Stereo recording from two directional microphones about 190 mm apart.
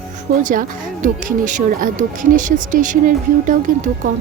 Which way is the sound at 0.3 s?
45° right (ahead or behind).